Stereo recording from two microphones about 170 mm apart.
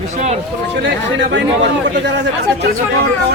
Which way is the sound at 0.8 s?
90° right.